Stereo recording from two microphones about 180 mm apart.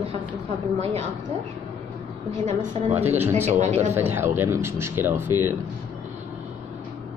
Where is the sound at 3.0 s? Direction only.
10° right (ahead or behind).